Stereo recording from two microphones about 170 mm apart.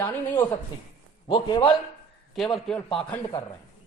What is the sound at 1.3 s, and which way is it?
Speech, 25° left (ahead or behind).